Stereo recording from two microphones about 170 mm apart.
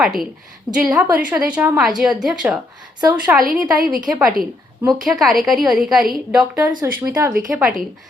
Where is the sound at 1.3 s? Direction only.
10° right (ahead or behind).